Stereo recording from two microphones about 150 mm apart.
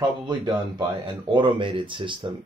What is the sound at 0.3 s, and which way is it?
Speech, 30° right (ahead or behind).